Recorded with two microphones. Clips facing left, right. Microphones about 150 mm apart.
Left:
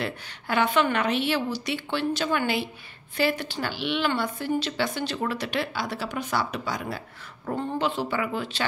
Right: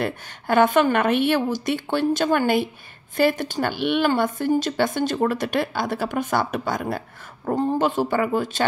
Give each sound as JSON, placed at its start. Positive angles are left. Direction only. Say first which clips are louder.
{"t": 0.0, "sound": "a woman's voice", "louder": "right 5 dB", "side_deg": -50}